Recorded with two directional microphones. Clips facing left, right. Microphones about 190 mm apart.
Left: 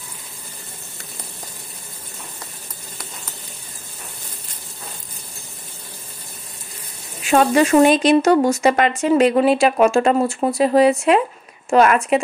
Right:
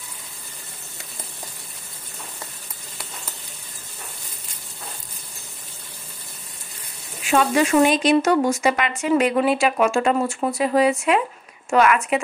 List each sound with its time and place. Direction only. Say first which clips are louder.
7.2 s speech: left 4 dB; 40° left (ahead or behind)